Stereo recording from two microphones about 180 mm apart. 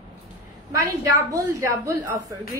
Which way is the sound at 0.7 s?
20° right (ahead or behind).